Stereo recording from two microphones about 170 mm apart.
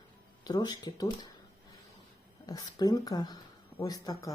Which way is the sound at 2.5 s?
25° left (ahead or behind).